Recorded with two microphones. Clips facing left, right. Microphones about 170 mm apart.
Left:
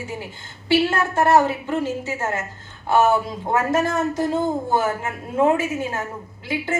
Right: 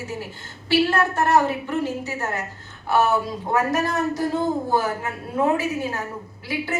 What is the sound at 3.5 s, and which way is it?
A woman's voice, 25° left (ahead or behind).